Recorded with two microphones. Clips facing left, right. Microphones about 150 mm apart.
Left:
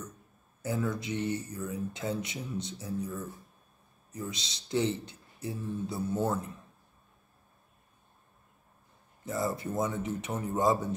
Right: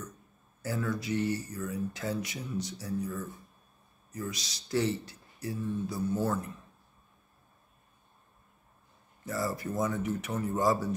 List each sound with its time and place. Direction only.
0.6 s speech: 20° left (ahead or behind)
4.1 s speech: 25° left (ahead or behind)
9.2 s speech: 20° left (ahead or behind)